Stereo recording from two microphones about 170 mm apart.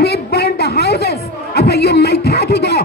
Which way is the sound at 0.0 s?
70° left (ahead or behind).